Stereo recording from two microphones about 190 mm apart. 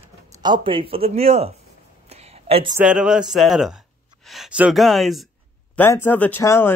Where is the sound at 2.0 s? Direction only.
35° right (ahead or behind).